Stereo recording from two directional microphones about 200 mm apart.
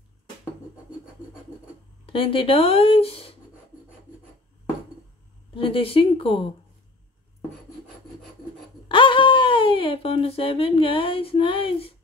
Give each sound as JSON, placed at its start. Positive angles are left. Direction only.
{"t": 2.0, "sound": "speech", "side_deg": 25}
{"t": 5.6, "sound": "speech", "side_deg": 25}
{"t": 8.8, "sound": "speech", "side_deg": 25}